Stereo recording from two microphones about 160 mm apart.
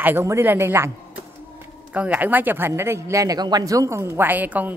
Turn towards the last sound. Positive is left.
turn(degrees=-10)  # may be behind; listen again after turning